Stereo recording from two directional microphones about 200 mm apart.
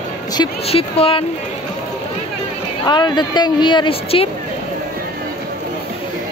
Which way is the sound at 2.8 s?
20° left (ahead or behind).